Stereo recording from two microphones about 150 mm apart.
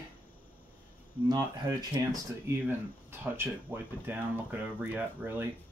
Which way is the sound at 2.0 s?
25° right (ahead or behind).